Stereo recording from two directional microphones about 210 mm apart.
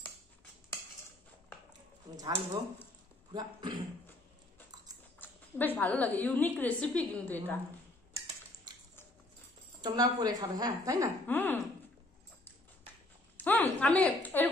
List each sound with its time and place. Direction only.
2.1 s a woman's voice: 20° right (ahead or behind)
5.2 s a woman's voice: 10° left (ahead or behind)
9.8 s a woman's voice: 20° right (ahead or behind)
11.2 s a woman's voice: 10° left (ahead or behind)
13.4 s a woman's voice: 10° left (ahead or behind)